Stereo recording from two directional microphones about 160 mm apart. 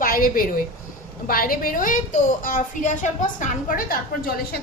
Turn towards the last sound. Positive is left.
turn(degrees=70)  # may be behind; listen again after turning